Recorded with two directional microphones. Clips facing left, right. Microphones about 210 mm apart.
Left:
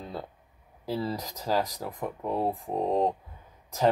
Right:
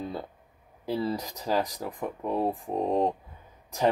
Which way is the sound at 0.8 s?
Centre (ahead or behind).